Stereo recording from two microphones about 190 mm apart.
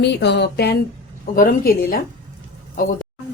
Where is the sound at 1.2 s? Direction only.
50° left (ahead or behind).